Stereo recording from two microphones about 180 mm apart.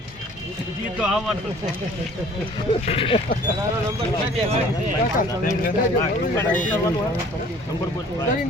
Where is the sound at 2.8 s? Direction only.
30° left (ahead or behind).